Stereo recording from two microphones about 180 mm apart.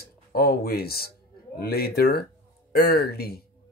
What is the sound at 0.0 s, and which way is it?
Speech, 55° left (ahead or behind).